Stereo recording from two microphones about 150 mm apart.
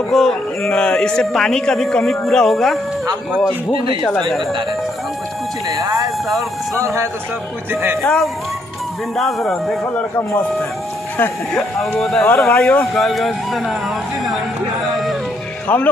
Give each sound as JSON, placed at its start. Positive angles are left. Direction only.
{"t": 0.1, "sound": "a man's voice", "side_deg": 5}
{"t": 4.0, "sound": "a man's voice", "side_deg": 0}
{"t": 5.7, "sound": "speech", "side_deg": -25}
{"t": 6.2, "sound": "a man's voice", "side_deg": 0}
{"t": 7.7, "sound": "speech", "side_deg": -15}
{"t": 8.0, "sound": "a man's voice", "side_deg": 0}
{"t": 11.1, "sound": "a man's voice", "side_deg": 10}
{"t": 12.4, "sound": "speech", "side_deg": 15}
{"t": 13.0, "sound": "a man's voice", "side_deg": 0}
{"t": 15.7, "sound": "speech", "side_deg": 10}